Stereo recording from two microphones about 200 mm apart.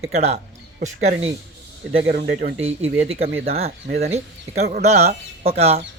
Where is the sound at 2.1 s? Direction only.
50° right (ahead or behind).